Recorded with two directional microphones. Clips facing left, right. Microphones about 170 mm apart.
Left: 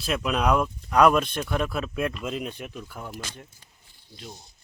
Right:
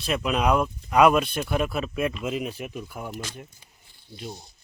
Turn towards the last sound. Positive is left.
turn(degrees=-10)  # may be behind; listen again after turning